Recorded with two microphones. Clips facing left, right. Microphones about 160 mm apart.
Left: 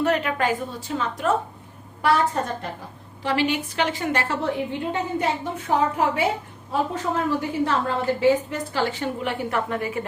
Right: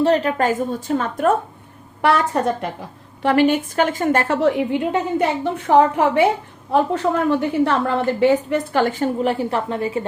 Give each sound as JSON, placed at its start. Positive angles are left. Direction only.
{"t": 0.0, "sound": "a woman's voice", "side_deg": -35}
{"t": 2.0, "sound": "a woman's voice", "side_deg": -70}
{"t": 3.2, "sound": "a woman's voice", "side_deg": -50}
{"t": 4.4, "sound": "a woman's voice", "side_deg": -75}